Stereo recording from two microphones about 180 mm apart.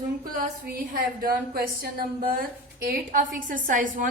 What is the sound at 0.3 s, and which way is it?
A woman's voice, 50° right (ahead or behind).